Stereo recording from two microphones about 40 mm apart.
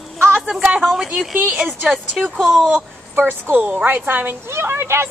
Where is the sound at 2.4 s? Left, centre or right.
Centre.